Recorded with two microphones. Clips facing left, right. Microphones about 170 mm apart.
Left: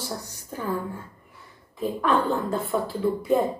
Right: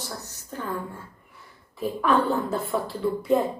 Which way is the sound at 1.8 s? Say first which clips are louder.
Right 1 dB; centre (ahead or behind).